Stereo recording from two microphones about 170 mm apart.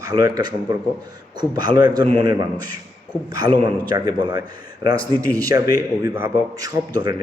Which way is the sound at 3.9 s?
25° right (ahead or behind).